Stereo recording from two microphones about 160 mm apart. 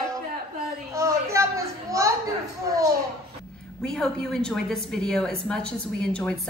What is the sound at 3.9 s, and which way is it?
A woman's voice, 5° left (ahead or behind).